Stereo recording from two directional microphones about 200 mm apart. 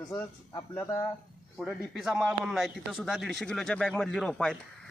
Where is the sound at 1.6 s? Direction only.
Centre (ahead or behind).